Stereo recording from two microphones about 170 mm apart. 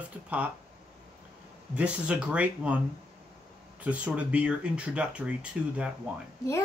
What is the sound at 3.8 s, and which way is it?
Speech, 10° right (ahead or behind).